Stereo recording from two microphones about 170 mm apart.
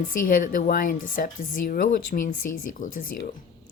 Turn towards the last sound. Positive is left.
turn(degrees=55)  # may be behind; listen again after turning